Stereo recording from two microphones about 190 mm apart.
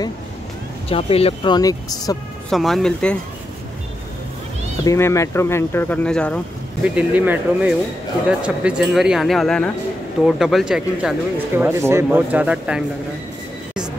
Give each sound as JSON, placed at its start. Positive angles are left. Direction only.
{"t": 0.8, "sound": "speech", "side_deg": 30}
{"t": 2.5, "sound": "speech", "side_deg": 0}
{"t": 4.8, "sound": "speech", "side_deg": 15}
{"t": 6.8, "sound": "speech", "side_deg": -5}